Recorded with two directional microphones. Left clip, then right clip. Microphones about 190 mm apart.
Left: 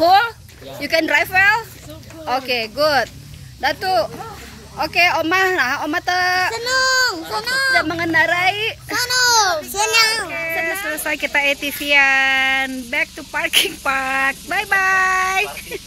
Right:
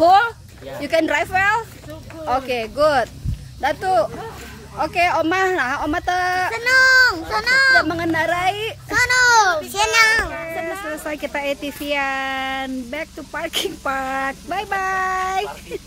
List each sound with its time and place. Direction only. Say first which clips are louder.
0.0 s speech: even; 5° right (ahead or behind)
6.5 s speech: right 4 dB; 25° left (ahead or behind)
7.2 s a child's voice: right 3 dB; 5° left (ahead or behind)
9.7 s a child's voice: right 1 dB; 20° left (ahead or behind)
10.2 s speech: left 4 dB; 5° right (ahead or behind)